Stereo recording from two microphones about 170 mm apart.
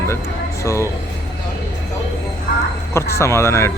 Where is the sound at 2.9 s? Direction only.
15° left (ahead or behind).